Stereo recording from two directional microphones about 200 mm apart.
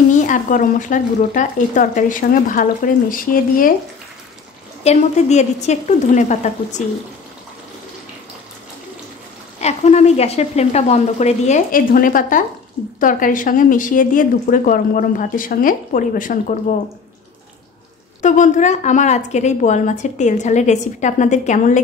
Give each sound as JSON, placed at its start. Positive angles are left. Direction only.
{"t": 0.3, "sound": "a woman's voice", "side_deg": 40}
{"t": 4.8, "sound": "a woman's voice", "side_deg": 35}
{"t": 9.6, "sound": "a woman's voice", "side_deg": 35}
{"t": 18.2, "sound": "a woman's voice", "side_deg": 40}